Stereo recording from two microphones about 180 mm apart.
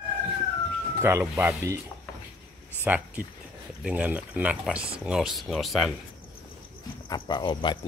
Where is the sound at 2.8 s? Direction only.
10° right (ahead or behind).